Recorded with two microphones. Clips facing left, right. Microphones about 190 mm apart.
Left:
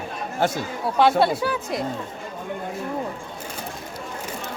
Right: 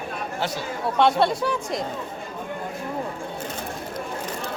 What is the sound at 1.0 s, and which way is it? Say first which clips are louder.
Speech: left 2 dB; 5° left (ahead or behind).